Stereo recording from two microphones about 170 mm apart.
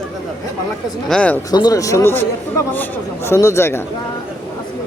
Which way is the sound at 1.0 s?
5° left (ahead or behind).